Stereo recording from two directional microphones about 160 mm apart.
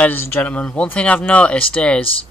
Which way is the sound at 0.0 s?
10° left (ahead or behind).